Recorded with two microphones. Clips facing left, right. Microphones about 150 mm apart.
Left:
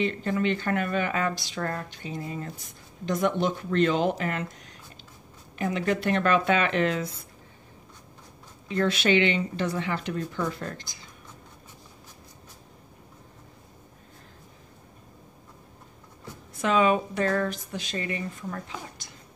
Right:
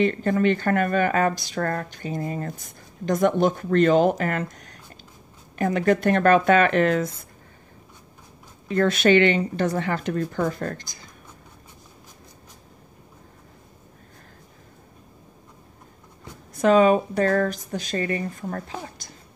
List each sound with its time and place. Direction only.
0.0 s speech: 50° right (ahead or behind)
8.6 s speech: 50° right (ahead or behind)
16.5 s speech: 40° right (ahead or behind)